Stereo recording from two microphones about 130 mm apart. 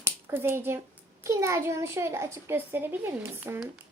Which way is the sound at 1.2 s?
25° right (ahead or behind).